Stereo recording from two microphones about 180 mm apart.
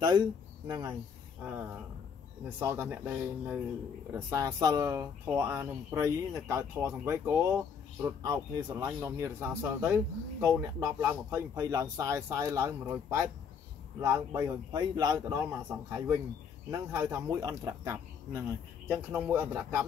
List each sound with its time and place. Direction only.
0.0 s speech: 25° right (ahead or behind)
2.6 s speech: 15° right (ahead or behind)